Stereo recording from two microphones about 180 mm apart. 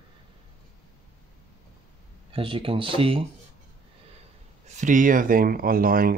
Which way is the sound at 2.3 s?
30° right (ahead or behind).